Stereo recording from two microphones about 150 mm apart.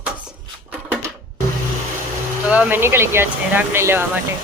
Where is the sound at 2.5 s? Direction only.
10° right (ahead or behind).